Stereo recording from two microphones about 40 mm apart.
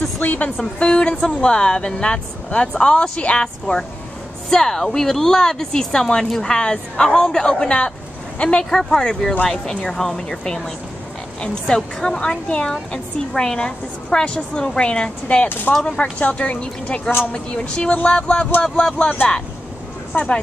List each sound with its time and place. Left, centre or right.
0.2 s speech: left
0.7 s speech: left
4.5 s speech: centre; by 8.6 s left
8.6 s speech: centre
15.4 s speech: left
16.0 s a woman's voice: left
20.1 s speech: left